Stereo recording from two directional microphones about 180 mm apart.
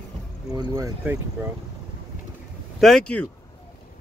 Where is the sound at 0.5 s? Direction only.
20° right (ahead or behind).